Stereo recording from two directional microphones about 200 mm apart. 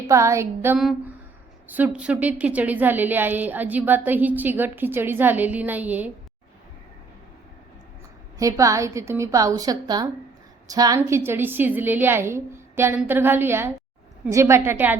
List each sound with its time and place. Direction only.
0.1 s a woman's voice: 15° right (ahead or behind)
8.4 s a woman's voice: 15° right (ahead or behind)